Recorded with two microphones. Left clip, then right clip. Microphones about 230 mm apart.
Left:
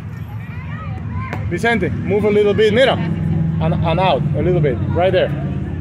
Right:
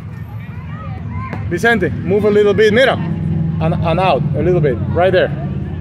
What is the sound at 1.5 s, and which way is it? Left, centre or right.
Speech, centre.